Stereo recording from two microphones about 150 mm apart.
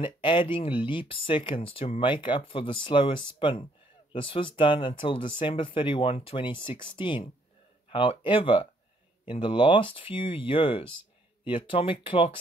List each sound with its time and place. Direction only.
0.0 s speech: 35° left (ahead or behind)